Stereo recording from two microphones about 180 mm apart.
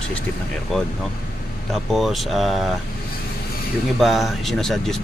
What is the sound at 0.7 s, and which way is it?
Speech, centre (ahead or behind).